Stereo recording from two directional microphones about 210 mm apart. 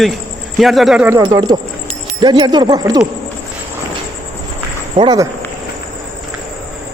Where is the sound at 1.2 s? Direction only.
20° right (ahead or behind).